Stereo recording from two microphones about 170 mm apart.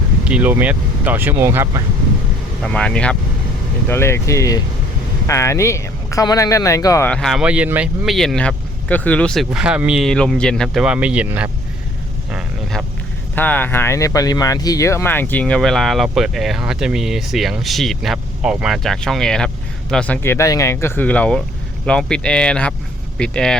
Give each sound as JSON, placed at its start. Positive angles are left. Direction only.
{"t": 0.3, "sound": "speech", "side_deg": -10}
{"t": 2.6, "sound": "speech", "side_deg": 5}
{"t": 7.1, "sound": "speech", "side_deg": 0}
{"t": 10.8, "sound": "speech", "side_deg": -5}
{"t": 12.3, "sound": "a sound", "side_deg": -5}
{"t": 13.3, "sound": "speech", "side_deg": 10}